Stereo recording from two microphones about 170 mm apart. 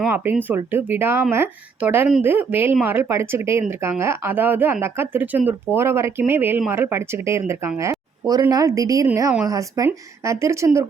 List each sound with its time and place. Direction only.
0.0 s speech: 10° right (ahead or behind)